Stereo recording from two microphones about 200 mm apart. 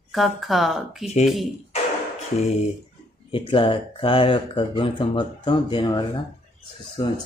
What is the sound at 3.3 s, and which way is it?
Speech, 25° left (ahead or behind).